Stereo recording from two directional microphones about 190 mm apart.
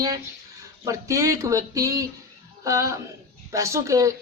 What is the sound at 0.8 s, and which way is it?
Speech, 15° right (ahead or behind).